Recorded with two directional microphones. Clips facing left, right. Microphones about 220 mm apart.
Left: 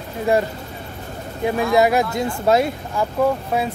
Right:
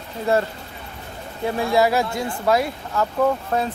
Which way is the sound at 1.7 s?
20° left (ahead or behind).